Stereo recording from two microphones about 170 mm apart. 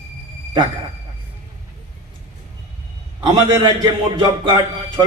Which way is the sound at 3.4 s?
25° right (ahead or behind).